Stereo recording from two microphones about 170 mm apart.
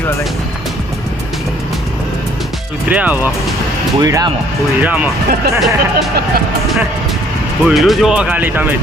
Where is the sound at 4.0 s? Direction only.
20° right (ahead or behind).